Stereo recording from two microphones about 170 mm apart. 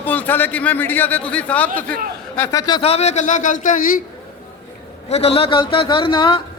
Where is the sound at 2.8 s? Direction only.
40° left (ahead or behind).